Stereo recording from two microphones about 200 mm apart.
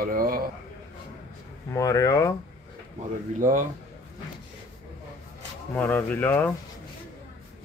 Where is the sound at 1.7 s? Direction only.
15° left (ahead or behind).